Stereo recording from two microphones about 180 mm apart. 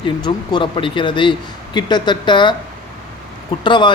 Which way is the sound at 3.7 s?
25° left (ahead or behind).